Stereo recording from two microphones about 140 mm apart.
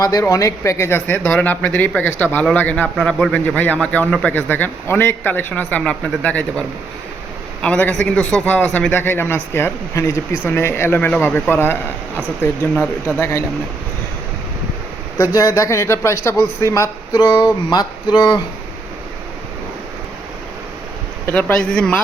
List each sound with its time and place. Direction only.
0.0 s speech: 25° left (ahead or behind)
15.2 s a man's voice: 25° left (ahead or behind)
21.2 s speech: 10° left (ahead or behind)